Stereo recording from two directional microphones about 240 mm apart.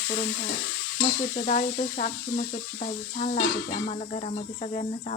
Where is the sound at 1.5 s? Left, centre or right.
Left.